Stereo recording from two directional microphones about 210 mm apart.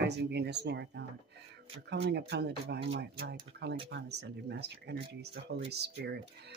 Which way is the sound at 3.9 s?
55° right (ahead or behind).